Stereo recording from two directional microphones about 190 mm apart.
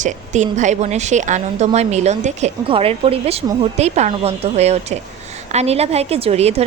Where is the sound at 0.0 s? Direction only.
40° right (ahead or behind).